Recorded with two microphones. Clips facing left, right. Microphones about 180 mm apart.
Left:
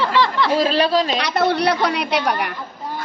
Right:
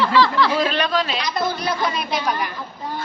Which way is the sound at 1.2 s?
70° left (ahead or behind).